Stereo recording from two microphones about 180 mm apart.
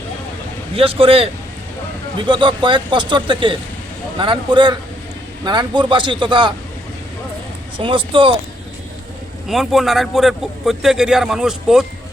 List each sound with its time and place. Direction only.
0.8 s a man's voice: 30° right (ahead or behind)
7.8 s speech: 30° right (ahead or behind)
9.5 s a man's voice: centre (ahead or behind)